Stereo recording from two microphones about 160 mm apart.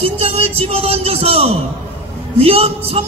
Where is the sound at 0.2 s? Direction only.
40° right (ahead or behind).